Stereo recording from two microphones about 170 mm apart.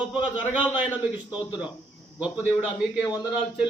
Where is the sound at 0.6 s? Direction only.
10° right (ahead or behind).